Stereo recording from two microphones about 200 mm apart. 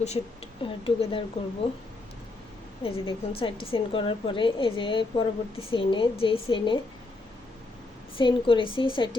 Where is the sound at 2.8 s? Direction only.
25° left (ahead or behind).